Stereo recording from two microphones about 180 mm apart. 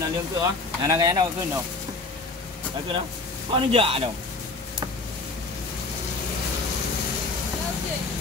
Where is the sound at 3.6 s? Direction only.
30° right (ahead or behind).